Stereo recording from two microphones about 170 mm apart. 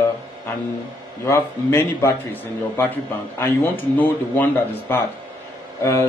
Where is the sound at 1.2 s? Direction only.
15° left (ahead or behind).